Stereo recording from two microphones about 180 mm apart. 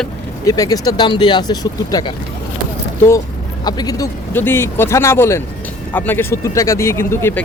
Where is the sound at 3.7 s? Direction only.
20° left (ahead or behind).